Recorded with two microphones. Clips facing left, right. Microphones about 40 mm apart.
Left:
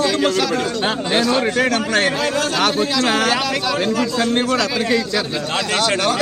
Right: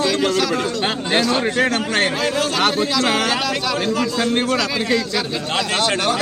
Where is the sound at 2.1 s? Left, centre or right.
Centre.